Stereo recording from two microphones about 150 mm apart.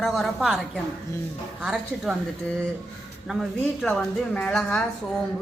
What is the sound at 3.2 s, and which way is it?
Speech, centre (ahead or behind).